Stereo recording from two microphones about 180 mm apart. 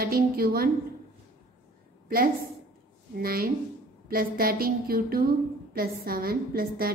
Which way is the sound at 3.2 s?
55° right (ahead or behind).